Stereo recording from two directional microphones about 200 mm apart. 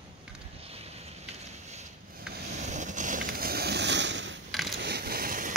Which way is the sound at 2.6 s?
35° right (ahead or behind).